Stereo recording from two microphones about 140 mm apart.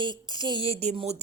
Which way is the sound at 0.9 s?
45° right (ahead or behind).